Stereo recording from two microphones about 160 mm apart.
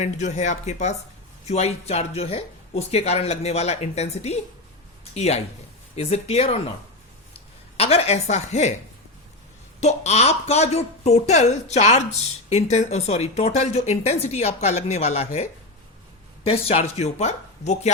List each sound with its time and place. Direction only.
0.0 s speech: 45° left (ahead or behind)
7.8 s speech: 40° left (ahead or behind)
9.8 s speech: 45° left (ahead or behind)